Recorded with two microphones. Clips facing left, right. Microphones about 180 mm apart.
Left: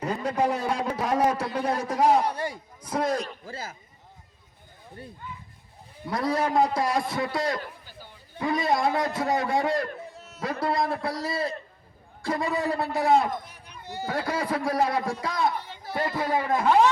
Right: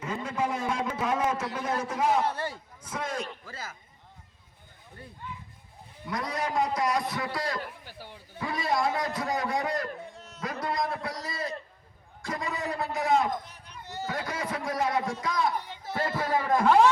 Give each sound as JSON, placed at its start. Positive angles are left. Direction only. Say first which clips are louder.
{"t": 0.0, "sound": "a man's voice", "louder": "left 5 dB", "side_deg": 35}
{"t": 2.2, "sound": "speech", "louder": "left 2 dB", "side_deg": 15}
{"t": 2.9, "sound": "a man's voice", "louder": "left 7 dB", "side_deg": 35}
{"t": 6.1, "sound": "a man's voice", "louder": "left 6 dB", "side_deg": 30}
{"t": 10.2, "sound": "a sound", "louder": "left 1 dB", "side_deg": 5}
{"t": 10.4, "sound": "a man's voice", "louder": "left 4 dB", "side_deg": 30}
{"t": 13.5, "sound": "a sound", "louder": "left 3 dB", "side_deg": 10}
{"t": 14.1, "sound": "a man's voice", "louder": "left 6 dB", "side_deg": 30}
{"t": 15.9, "sound": "speech", "louder": "left 2 dB", "side_deg": 15}